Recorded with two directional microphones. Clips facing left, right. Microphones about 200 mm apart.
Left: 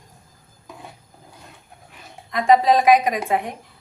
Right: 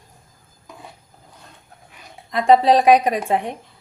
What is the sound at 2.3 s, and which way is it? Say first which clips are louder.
Speech: right 2 dB; 30° right (ahead or behind).